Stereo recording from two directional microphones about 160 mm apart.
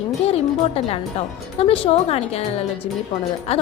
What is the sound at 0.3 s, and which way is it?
A woman's voice, 40° left (ahead or behind).